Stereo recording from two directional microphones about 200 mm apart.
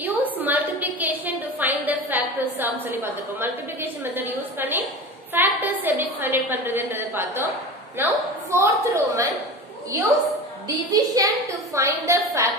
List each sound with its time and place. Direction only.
0.0 s a sound: 10° right (ahead or behind)
5.3 s a woman's voice: 10° right (ahead or behind)
10.9 s a woman's voice: 15° right (ahead or behind)